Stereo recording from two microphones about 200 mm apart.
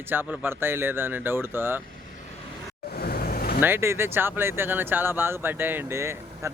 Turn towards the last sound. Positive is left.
turn(degrees=-15)  # may be behind; listen again after turning